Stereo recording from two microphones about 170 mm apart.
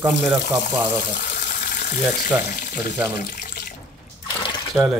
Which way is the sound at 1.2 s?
50° left (ahead or behind).